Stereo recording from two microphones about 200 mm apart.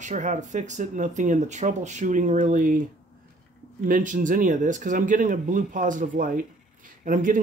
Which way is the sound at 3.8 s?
40° right (ahead or behind).